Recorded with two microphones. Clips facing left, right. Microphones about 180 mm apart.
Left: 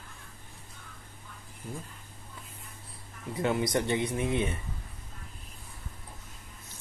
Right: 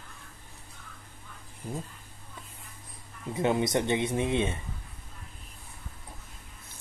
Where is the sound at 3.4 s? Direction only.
25° right (ahead or behind).